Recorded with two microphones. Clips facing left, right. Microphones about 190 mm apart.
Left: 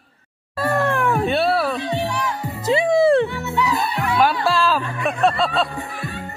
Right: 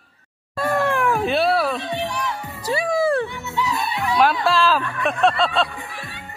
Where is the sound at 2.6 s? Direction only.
25° left (ahead or behind).